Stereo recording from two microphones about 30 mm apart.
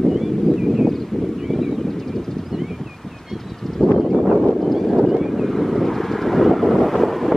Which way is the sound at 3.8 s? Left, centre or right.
Centre.